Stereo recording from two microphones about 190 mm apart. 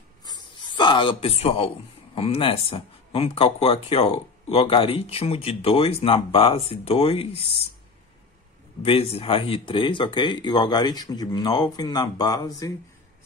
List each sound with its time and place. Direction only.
0.2 s a sound: 20° left (ahead or behind)
2.1 s speech: 30° left (ahead or behind)
8.8 s speech: 30° left (ahead or behind)